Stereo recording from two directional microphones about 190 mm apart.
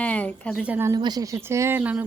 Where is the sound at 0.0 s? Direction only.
10° left (ahead or behind).